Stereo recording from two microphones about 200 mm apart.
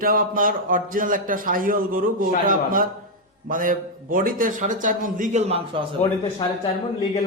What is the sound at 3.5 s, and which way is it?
A man's voice, 45° right (ahead or behind).